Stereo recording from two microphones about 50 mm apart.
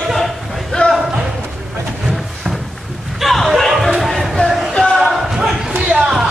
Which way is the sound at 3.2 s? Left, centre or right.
Centre.